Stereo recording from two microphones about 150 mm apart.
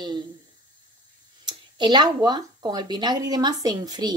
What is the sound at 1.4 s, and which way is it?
Speech, 30° right (ahead or behind).